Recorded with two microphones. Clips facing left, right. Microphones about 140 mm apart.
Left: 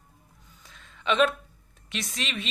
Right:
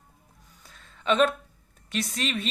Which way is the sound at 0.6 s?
35° right (ahead or behind).